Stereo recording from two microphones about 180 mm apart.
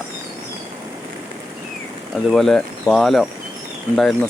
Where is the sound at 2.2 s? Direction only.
Centre (ahead or behind).